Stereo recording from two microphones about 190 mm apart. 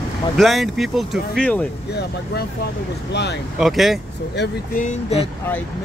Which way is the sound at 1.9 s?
60° left (ahead or behind).